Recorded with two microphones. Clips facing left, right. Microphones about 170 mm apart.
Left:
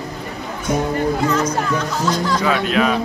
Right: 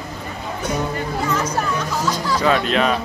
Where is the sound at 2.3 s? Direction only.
Centre (ahead or behind).